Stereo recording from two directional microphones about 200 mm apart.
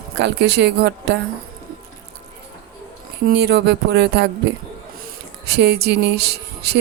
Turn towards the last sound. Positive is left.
turn(degrees=-55)  # may be behind; listen again after turning